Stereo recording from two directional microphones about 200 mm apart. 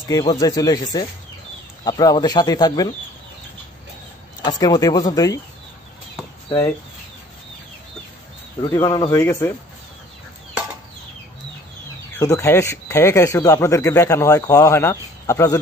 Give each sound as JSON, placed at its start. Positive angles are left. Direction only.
{"t": 0.1, "sound": "speech", "side_deg": 20}
{"t": 4.4, "sound": "speech", "side_deg": 20}
{"t": 8.5, "sound": "speech", "side_deg": 20}
{"t": 12.2, "sound": "speech", "side_deg": 15}